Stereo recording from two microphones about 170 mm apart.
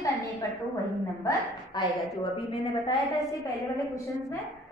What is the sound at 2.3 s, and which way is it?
Speech, 30° left (ahead or behind).